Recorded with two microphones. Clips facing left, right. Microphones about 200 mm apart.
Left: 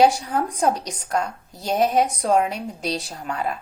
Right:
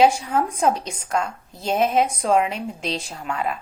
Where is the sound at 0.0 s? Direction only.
35° left (ahead or behind).